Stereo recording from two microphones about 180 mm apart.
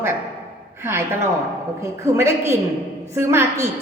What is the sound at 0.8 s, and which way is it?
A woman's voice, 15° right (ahead or behind).